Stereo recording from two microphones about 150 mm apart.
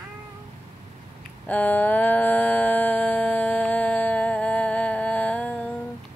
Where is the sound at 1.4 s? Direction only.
10° left (ahead or behind).